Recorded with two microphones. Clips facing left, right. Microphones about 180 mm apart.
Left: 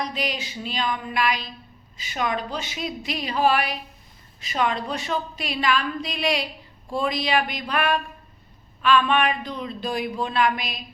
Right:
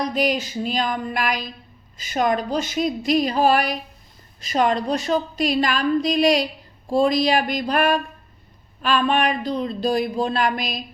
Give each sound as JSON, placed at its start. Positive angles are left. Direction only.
{"t": 0.1, "sound": "a woman's voice", "side_deg": -45}